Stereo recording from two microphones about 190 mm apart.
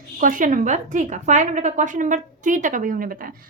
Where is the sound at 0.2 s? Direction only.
45° right (ahead or behind).